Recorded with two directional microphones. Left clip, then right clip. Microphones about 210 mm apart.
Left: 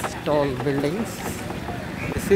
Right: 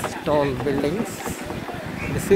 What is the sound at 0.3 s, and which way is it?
Speech, 5° left (ahead or behind).